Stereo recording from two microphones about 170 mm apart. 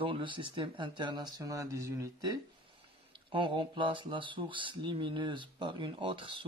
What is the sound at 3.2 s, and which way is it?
Speech, 30° right (ahead or behind).